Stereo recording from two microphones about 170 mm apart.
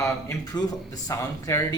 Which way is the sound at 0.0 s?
20° left (ahead or behind).